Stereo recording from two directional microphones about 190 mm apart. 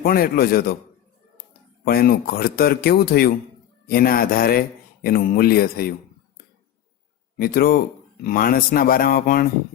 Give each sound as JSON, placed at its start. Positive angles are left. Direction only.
{"t": 0.0, "sound": "speech", "side_deg": 50}
{"t": 1.8, "sound": "speech", "side_deg": 50}
{"t": 7.3, "sound": "speech", "side_deg": 50}